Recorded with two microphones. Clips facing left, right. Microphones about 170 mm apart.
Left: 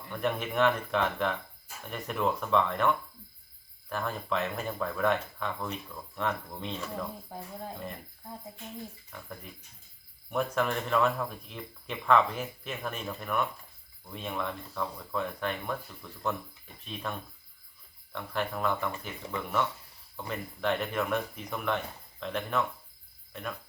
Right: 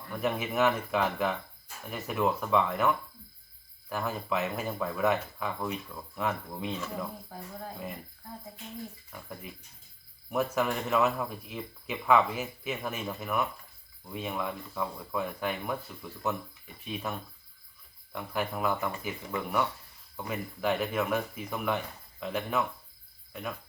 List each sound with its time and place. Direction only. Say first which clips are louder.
0.1 s speech: even; 5° right (ahead or behind)
7.3 s speech: left 2 dB; 20° left (ahead or behind)
10.3 s speech: right 1 dB; 5° right (ahead or behind)
16.8 s speech: right 2 dB; 5° right (ahead or behind)